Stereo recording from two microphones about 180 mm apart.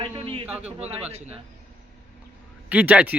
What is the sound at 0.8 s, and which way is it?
Speech, 35° right (ahead or behind).